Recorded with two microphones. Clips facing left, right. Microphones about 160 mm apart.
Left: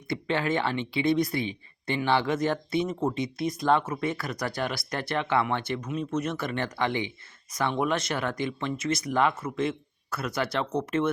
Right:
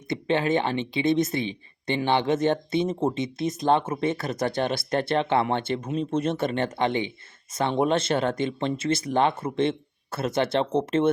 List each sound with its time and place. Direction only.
0.1 s speech: 20° right (ahead or behind)